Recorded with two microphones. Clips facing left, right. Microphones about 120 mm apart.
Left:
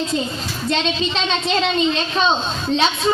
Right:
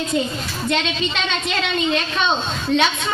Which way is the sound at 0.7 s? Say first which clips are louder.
Left 2 dB; 30° left (ahead or behind).